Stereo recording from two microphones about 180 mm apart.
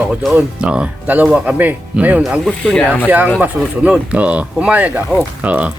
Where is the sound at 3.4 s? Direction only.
5° right (ahead or behind).